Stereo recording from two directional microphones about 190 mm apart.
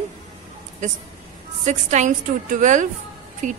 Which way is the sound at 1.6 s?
40° right (ahead or behind).